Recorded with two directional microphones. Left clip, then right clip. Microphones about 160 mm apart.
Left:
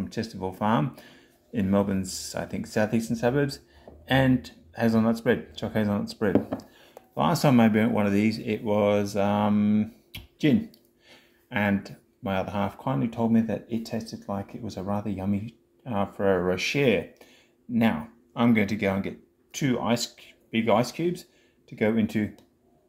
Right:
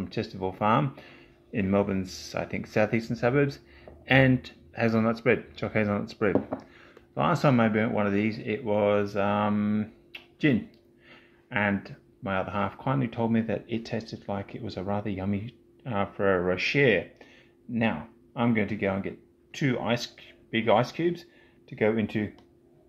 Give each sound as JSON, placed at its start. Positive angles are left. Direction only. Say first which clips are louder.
{"t": 0.1, "sound": "speech", "louder": "right 3 dB", "side_deg": -15}
{"t": 17.7, "sound": "speech", "louder": "left 3 dB", "side_deg": 0}